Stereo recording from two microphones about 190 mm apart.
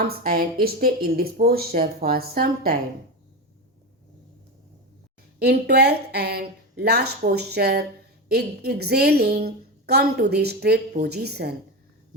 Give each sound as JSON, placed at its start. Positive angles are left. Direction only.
{"t": 0.0, "sound": "speech", "side_deg": -50}
{"t": 5.4, "sound": "a woman's voice", "side_deg": -55}